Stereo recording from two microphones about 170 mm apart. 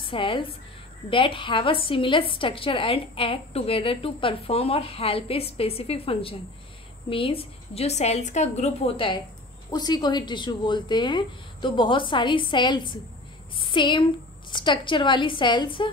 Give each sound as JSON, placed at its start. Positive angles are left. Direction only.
{"t": 0.0, "sound": "a woman's voice", "side_deg": 30}